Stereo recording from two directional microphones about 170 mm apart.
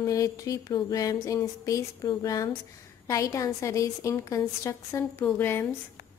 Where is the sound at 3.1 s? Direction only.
20° left (ahead or behind).